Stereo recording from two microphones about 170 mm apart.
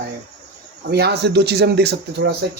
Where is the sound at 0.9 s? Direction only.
75° right (ahead or behind).